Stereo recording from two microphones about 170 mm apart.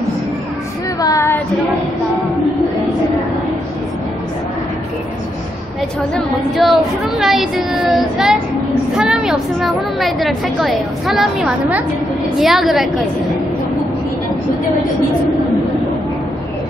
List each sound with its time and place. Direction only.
1.0 s child singing: 15° left (ahead or behind)
6.1 s speech: centre (ahead or behind)